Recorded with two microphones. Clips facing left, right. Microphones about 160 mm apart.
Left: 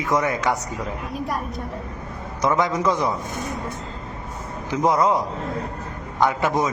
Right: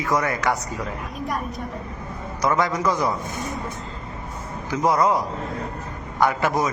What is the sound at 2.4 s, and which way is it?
Speech, 20° left (ahead or behind).